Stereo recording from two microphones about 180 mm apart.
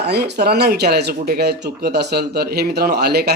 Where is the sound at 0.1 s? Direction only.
65° right (ahead or behind).